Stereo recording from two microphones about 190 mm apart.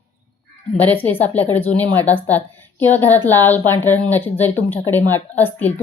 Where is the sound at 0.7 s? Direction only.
10° left (ahead or behind).